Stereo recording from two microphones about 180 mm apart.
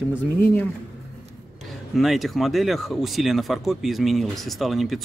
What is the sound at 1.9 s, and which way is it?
Speech, centre (ahead or behind).